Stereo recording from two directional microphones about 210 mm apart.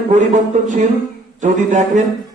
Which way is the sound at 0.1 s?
35° right (ahead or behind).